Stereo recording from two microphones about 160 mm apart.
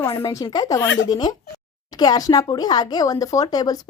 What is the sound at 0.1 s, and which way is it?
Speech, 30° left (ahead or behind).